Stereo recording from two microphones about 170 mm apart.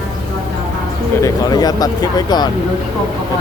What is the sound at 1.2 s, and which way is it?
Speech, 20° left (ahead or behind).